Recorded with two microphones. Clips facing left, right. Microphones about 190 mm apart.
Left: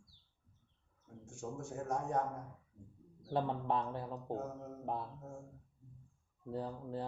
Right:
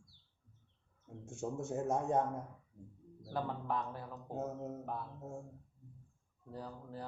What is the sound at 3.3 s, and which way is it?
Speech, 25° left (ahead or behind).